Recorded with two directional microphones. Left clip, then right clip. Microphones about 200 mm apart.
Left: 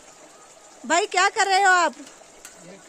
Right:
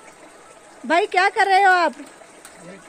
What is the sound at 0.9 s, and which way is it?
A woman's voice, 5° left (ahead or behind).